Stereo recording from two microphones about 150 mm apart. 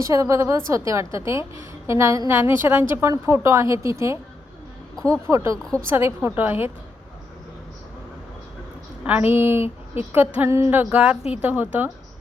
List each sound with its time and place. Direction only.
0.0 s a woman's voice: 20° right (ahead or behind)
5.3 s a woman's voice: 20° right (ahead or behind)
9.0 s a woman's voice: 10° right (ahead or behind)